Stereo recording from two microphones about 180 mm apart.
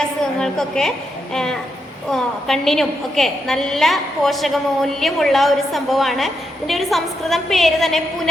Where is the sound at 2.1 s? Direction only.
Centre (ahead or behind).